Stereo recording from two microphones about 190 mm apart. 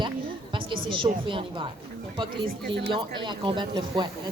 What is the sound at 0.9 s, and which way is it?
A woman's voice, 25° right (ahead or behind).